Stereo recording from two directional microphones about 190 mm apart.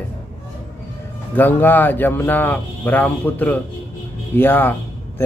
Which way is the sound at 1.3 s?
10° left (ahead or behind).